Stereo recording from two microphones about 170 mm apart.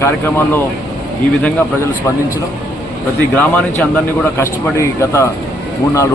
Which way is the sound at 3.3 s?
10° left (ahead or behind).